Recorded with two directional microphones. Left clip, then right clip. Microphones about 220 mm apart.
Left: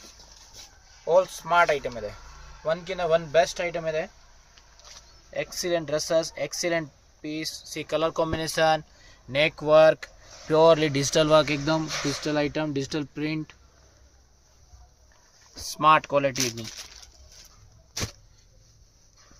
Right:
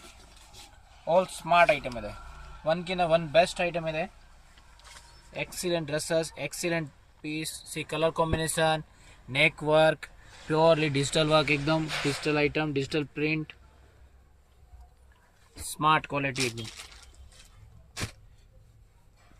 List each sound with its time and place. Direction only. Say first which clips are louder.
1.1 s speech: left 3 dB; 30° left (ahead or behind)
2.6 s speech: left 1 dB; 35° left (ahead or behind)
5.3 s speech: left 4 dB; 40° left (ahead or behind)
9.3 s speech: left 4 dB; 50° left (ahead or behind)
15.7 s speech: left 6 dB; 45° left (ahead or behind)
16.3 s speech: left 2 dB; 35° left (ahead or behind)
18.0 s a sound: left 4 dB; 40° left (ahead or behind)